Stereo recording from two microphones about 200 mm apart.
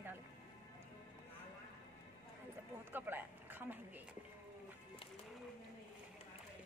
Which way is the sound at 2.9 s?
10° right (ahead or behind).